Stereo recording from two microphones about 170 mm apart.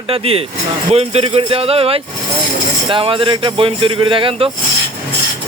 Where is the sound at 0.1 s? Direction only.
35° right (ahead or behind).